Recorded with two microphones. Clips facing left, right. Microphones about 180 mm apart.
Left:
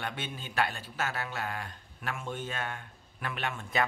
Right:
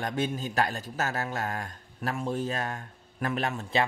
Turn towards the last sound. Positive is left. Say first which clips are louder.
# right 4 dB
turn(degrees=-35)  # may be behind; listen again after turning